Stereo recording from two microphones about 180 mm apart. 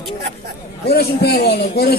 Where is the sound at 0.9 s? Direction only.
60° left (ahead or behind).